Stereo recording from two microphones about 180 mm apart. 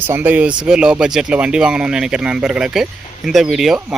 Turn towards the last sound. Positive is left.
turn(degrees=0)  # may be behind; listen again after turning